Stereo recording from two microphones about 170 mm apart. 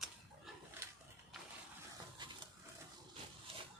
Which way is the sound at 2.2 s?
25° right (ahead or behind).